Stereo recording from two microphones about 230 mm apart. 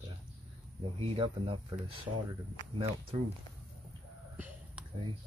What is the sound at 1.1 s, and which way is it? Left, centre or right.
Speech, right.